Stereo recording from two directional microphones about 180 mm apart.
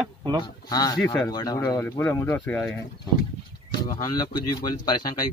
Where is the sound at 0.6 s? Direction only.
20° left (ahead or behind).